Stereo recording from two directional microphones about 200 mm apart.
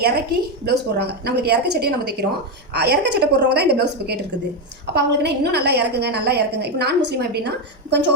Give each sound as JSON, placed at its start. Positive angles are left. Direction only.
{"t": 0.0, "sound": "a woman's voice", "side_deg": -50}